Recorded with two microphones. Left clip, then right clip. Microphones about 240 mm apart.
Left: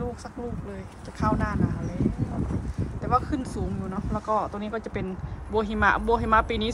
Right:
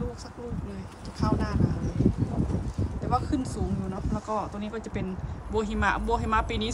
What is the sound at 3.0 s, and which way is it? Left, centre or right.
A woman's voice, centre.